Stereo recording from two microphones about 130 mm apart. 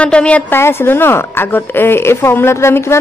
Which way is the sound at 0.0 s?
10° left (ahead or behind).